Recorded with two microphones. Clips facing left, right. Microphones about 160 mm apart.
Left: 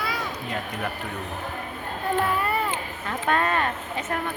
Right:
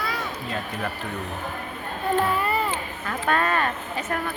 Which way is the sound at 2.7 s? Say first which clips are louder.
Right 1 dB; 20° left (ahead or behind).